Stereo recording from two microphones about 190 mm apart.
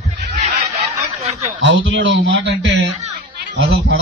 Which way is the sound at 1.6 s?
75° right (ahead or behind).